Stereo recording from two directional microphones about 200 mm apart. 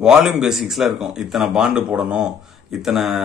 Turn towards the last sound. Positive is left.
turn(degrees=0)  # may be behind; listen again after turning